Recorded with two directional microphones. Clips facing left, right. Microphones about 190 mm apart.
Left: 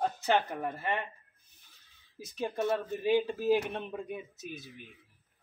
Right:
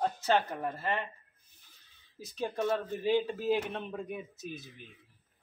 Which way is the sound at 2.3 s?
5° left (ahead or behind).